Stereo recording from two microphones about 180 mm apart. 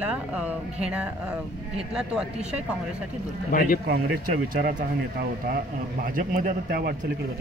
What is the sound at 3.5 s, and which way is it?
Speech, 50° left (ahead or behind).